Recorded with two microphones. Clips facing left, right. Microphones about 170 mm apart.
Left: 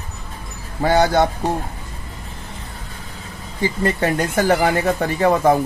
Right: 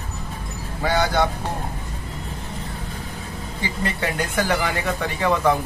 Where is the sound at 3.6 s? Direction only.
45° left (ahead or behind).